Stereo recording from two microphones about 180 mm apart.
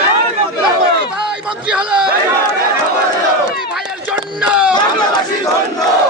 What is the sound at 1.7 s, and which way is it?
Speech, 5° right (ahead or behind).